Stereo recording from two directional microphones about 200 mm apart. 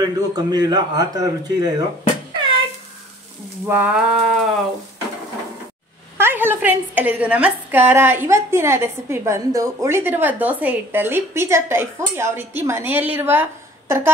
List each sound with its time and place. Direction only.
0.0 s a man's voice: 20° right (ahead or behind)
3.6 s a sound: 10° right (ahead or behind)
6.1 s a woman's voice: 10° right (ahead or behind)